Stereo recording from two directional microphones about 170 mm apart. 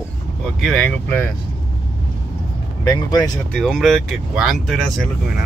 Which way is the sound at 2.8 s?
20° left (ahead or behind).